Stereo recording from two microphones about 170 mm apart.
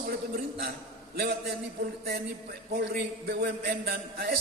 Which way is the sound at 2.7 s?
70° right (ahead or behind).